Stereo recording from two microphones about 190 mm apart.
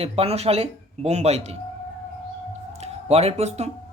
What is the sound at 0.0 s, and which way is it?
Speech, 30° right (ahead or behind).